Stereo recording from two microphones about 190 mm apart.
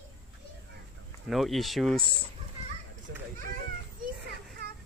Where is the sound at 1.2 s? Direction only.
Centre (ahead or behind).